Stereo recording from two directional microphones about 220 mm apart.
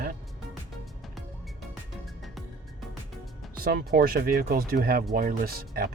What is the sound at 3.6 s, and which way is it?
Speech, 40° right (ahead or behind).